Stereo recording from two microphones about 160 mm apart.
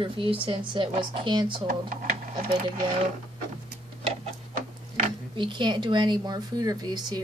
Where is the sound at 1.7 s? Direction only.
55° right (ahead or behind).